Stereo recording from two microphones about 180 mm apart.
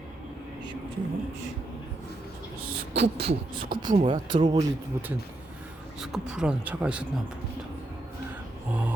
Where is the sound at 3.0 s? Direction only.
35° right (ahead or behind).